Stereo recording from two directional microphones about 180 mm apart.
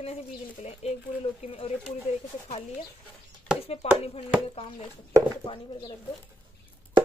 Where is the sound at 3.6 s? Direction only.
35° left (ahead or behind).